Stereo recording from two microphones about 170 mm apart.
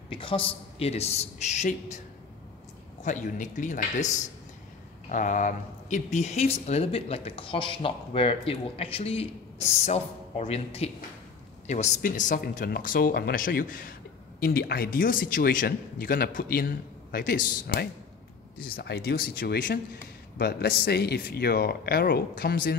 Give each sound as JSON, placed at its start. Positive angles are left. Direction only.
{"t": 0.1, "sound": "speech", "side_deg": 30}
{"t": 3.0, "sound": "a man's voice", "side_deg": 50}
{"t": 18.6, "sound": "speech", "side_deg": 65}